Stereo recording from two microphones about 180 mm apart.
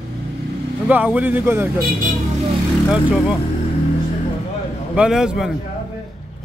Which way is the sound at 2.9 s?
5° right (ahead or behind).